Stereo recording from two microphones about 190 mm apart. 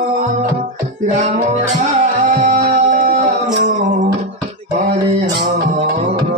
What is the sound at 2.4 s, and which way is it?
Music, 45° right (ahead or behind).